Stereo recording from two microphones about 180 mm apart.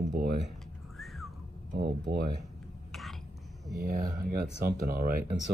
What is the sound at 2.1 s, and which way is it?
Speech, 65° right (ahead or behind).